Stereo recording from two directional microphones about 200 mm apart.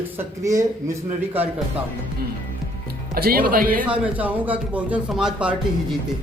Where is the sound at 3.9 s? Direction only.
10° right (ahead or behind).